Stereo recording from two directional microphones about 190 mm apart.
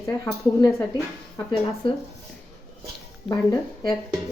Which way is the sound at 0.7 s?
Centre (ahead or behind).